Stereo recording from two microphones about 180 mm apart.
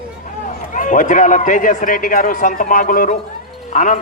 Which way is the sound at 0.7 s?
45° left (ahead or behind).